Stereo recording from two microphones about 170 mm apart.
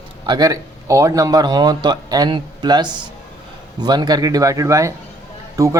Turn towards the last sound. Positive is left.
turn(degrees=-20)  # may be behind; listen again after turning